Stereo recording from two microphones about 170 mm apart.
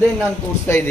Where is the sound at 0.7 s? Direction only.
15° left (ahead or behind).